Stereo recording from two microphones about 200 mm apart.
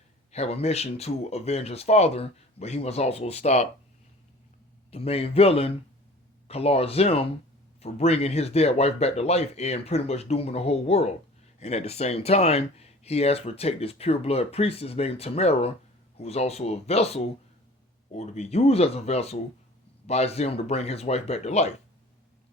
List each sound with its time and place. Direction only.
0.3 s speech: 30° left (ahead or behind)
4.9 s speech: 30° left (ahead or behind)